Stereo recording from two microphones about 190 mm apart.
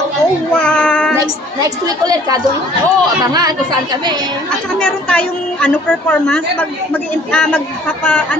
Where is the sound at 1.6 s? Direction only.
20° right (ahead or behind).